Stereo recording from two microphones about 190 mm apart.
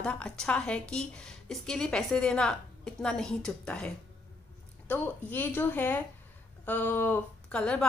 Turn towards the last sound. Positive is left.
turn(degrees=5)  # may be behind; listen again after turning